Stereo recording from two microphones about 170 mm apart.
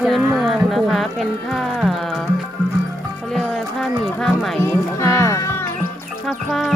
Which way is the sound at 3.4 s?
Centre (ahead or behind).